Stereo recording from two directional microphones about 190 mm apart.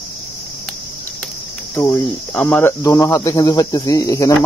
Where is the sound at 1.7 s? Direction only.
15° left (ahead or behind).